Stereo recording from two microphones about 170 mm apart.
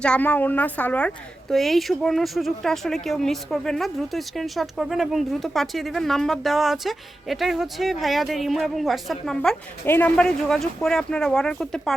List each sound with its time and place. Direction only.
0.0 s a woman's voice: 5° left (ahead or behind)